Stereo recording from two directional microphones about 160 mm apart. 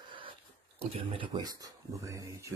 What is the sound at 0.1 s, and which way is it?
Speech, 35° right (ahead or behind).